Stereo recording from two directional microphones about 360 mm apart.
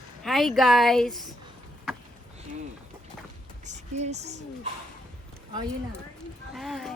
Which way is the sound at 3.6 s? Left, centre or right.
Centre.